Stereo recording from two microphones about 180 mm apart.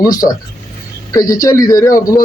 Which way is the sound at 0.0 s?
20° left (ahead or behind).